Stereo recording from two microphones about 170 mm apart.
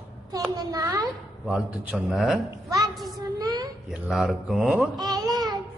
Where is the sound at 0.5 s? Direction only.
20° right (ahead or behind).